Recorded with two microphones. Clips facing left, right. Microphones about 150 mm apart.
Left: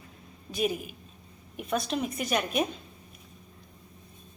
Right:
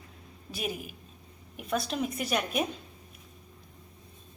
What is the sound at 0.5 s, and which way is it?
A woman's voice, 5° right (ahead or behind).